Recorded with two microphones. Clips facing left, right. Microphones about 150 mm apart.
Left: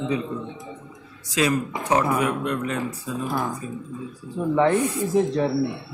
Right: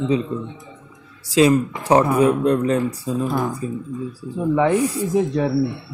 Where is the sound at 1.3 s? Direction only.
30° right (ahead or behind).